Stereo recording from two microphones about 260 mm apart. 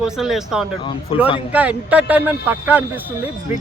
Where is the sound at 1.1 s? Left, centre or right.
Left.